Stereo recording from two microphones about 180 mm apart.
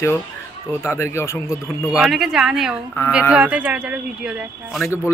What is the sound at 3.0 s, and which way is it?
Speech, 15° left (ahead or behind).